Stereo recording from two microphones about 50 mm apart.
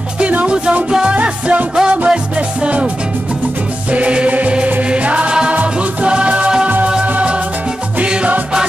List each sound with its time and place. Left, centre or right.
0.2 s music: right
3.9 s music: right